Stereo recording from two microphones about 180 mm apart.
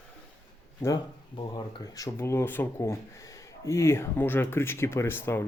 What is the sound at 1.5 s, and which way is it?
Speech, 20° left (ahead or behind).